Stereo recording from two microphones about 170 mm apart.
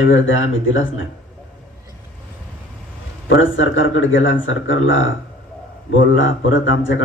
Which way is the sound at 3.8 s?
90° left.